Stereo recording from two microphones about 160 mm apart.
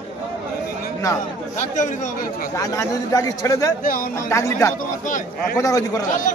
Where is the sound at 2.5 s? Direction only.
20° left (ahead or behind).